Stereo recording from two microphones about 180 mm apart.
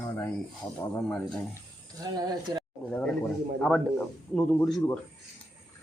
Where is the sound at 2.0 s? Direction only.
20° right (ahead or behind).